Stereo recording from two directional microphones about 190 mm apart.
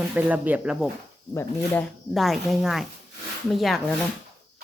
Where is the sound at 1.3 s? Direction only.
10° left (ahead or behind).